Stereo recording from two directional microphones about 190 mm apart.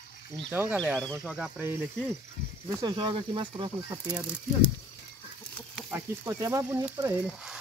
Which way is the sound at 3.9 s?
5° right (ahead or behind).